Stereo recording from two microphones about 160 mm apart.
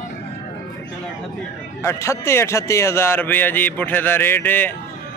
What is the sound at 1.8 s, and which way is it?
A man's voice, 20° left (ahead or behind).